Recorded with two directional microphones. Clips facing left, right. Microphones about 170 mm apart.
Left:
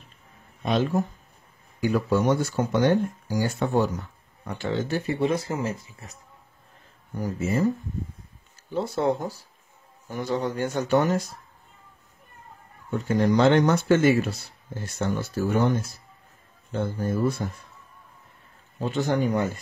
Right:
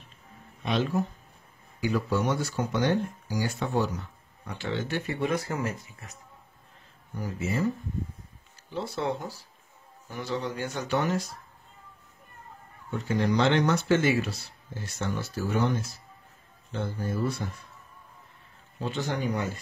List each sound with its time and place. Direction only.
0.7 s speech: 45° left (ahead or behind)
7.2 s speech: 45° left (ahead or behind)
8.7 s speech: 45° left (ahead or behind)
12.9 s speech: 45° left (ahead or behind)
18.8 s speech: 50° left (ahead or behind)